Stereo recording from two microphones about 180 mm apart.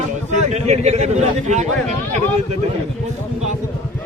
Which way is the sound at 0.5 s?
40° right (ahead or behind).